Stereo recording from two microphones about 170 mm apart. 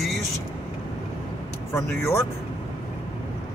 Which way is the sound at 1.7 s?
15° left (ahead or behind).